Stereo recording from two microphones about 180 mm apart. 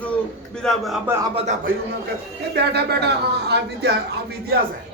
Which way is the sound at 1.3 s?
35° right (ahead or behind).